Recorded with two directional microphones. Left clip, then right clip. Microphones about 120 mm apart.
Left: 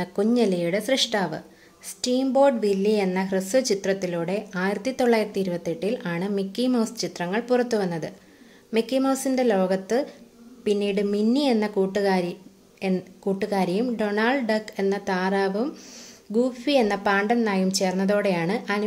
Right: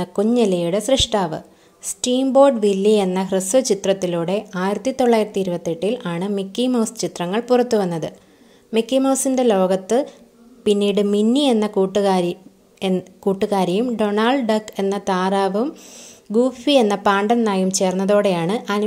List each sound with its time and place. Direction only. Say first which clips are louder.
0.0 s a woman's voice: right 4 dB; 35° right (ahead or behind)